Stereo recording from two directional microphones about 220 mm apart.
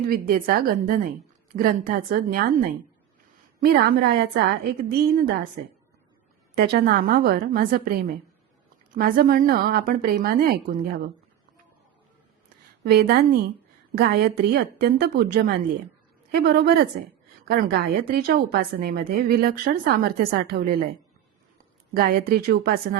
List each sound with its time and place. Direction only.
0.1 s a woman's voice: 40° right (ahead or behind)
3.6 s a woman's voice: 45° right (ahead or behind)
6.6 s a woman's voice: 45° right (ahead or behind)
12.8 s a woman's voice: 45° right (ahead or behind)
21.9 s a woman's voice: 45° right (ahead or behind)